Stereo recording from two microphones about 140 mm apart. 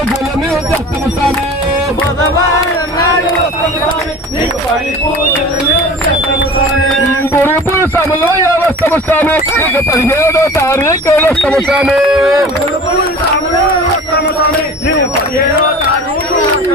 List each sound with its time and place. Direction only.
7.3 s a sound: 15° left (ahead or behind)
8.6 s speech: 15° left (ahead or behind)
11.7 s music: 5° right (ahead or behind)